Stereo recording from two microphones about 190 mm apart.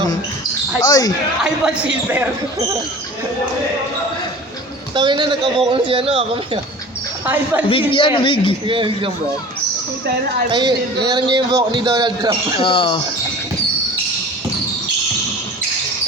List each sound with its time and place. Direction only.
0.9 s a man's voice: 20° left (ahead or behind)
1.6 s speech: 5° right (ahead or behind)
4.9 s a man's voice: 25° right (ahead or behind)
7.7 s a man's voice: 25° left (ahead or behind)
8.6 s a man's voice: 25° right (ahead or behind)
10.5 s a man's voice: 20° right (ahead or behind)
12.5 s a man's voice: 25° left (ahead or behind)